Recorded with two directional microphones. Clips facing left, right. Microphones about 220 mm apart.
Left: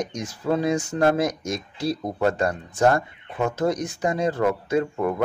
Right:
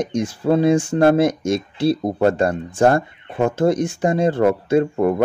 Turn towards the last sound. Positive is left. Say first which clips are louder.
# right 6 dB
turn(degrees=-30)  # may be behind; listen again after turning